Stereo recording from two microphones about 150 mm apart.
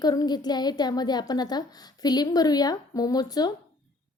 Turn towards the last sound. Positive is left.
turn(degrees=25)  # may be behind; listen again after turning